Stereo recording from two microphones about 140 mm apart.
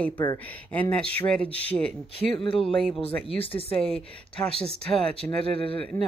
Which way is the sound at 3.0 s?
45° left (ahead or behind).